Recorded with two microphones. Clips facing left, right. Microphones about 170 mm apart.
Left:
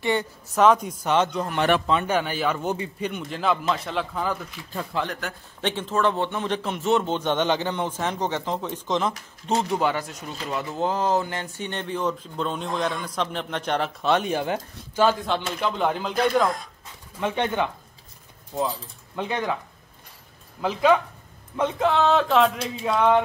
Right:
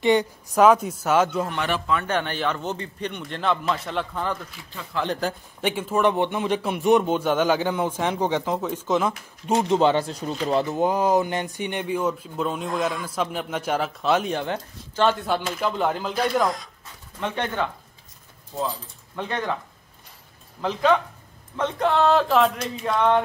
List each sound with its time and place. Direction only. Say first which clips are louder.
0.0 s speech: right 5 dB; 15° right (ahead or behind)
2.0 s a man's voice: left 1 dB; 5° left (ahead or behind)
5.0 s speech: right 6 dB; 30° right (ahead or behind)
5.6 s speech: right 2 dB; 10° right (ahead or behind)
9.8 s speech: right 5 dB; 25° right (ahead or behind)
10.7 s speech: left 1 dB; 15° right (ahead or behind); by 15.2 s 5° left (ahead or behind)
15.2 s a man's voice: right 1 dB; 5° right (ahead or behind)
17.2 s speech: left 2 dB; 15° left (ahead or behind)
19.1 s speech: left 1 dB; 10° left (ahead or behind)
20.6 s speech: left 1 dB; 10° left (ahead or behind)
21.8 s a man's voice: right 2 dB; centre (ahead or behind)